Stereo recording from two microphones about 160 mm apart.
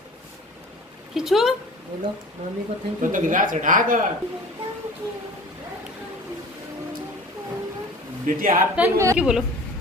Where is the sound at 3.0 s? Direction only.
55° right (ahead or behind).